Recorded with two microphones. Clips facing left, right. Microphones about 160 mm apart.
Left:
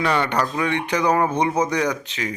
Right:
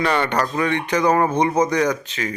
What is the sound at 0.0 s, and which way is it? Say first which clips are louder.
A man's voice: right 1 dB; 10° left (ahead or behind).